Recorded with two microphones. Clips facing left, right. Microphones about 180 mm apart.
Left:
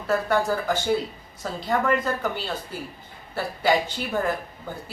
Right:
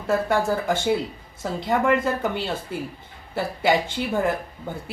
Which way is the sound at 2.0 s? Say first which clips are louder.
Right 3 dB; 25° right (ahead or behind).